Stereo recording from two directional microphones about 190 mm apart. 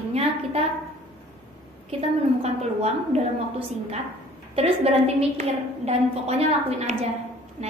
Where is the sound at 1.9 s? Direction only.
35° right (ahead or behind).